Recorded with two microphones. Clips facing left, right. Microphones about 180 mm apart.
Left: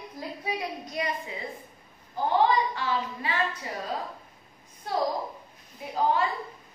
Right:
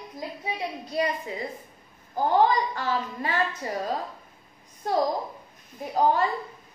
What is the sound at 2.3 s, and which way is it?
A woman's voice, 45° right (ahead or behind).